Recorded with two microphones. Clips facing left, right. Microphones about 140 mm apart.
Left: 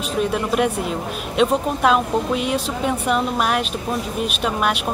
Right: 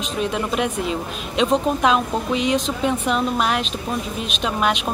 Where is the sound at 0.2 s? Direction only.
5° left (ahead or behind).